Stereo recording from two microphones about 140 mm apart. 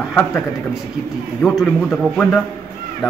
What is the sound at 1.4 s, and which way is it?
A man's voice, 5° left (ahead or behind).